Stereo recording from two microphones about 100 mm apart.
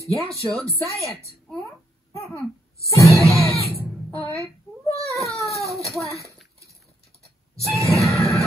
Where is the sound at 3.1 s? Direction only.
30° right (ahead or behind).